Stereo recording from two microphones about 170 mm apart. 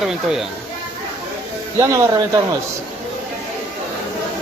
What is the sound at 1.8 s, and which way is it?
Speech, 20° right (ahead or behind).